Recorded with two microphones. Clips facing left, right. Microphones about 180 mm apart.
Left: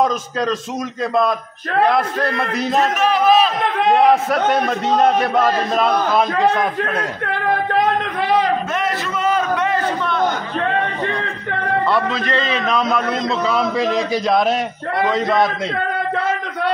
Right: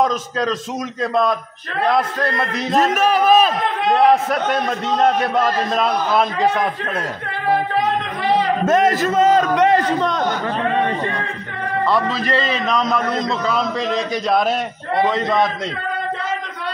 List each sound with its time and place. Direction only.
0.0 s a man's voice: centre (ahead or behind)
2.0 s a man's voice: centre (ahead or behind)
3.0 s a man's voice: 45° right (ahead or behind)
4.1 s a man's voice: centre (ahead or behind)
8.6 s a man's voice: 45° right (ahead or behind)
11.9 s a man's voice: centre (ahead or behind)